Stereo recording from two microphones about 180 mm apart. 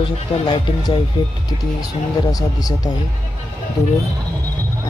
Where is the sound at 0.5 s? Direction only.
25° left (ahead or behind).